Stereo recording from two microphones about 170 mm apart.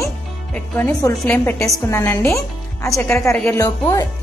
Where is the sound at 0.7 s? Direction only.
10° left (ahead or behind).